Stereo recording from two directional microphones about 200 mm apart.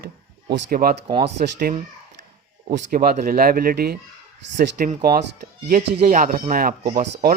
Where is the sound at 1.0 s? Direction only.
30° right (ahead or behind).